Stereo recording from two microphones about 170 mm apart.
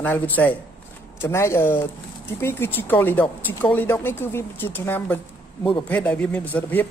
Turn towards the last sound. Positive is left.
turn(degrees=10)  # may be behind; listen again after turning